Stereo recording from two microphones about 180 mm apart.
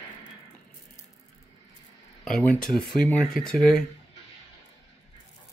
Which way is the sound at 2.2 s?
Centre (ahead or behind).